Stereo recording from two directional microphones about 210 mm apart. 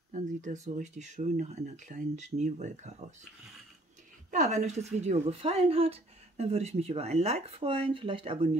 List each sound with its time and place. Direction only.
0.1 s speech: 35° right (ahead or behind)
4.3 s speech: 35° right (ahead or behind)